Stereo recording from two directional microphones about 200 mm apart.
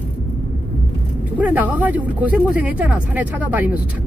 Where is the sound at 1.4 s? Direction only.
10° right (ahead or behind).